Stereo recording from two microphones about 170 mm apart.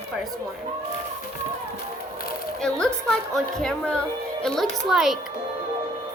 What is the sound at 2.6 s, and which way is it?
A woman's voice, 5° left (ahead or behind).